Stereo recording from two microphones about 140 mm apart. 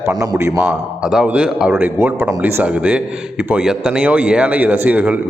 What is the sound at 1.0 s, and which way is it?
A man's voice, 5° right (ahead or behind).